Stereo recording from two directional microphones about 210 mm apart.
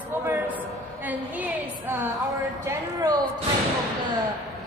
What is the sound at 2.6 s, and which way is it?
Speech, 20° right (ahead or behind).